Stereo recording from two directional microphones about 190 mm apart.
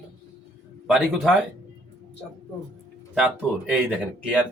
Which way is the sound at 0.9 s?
Centre (ahead or behind).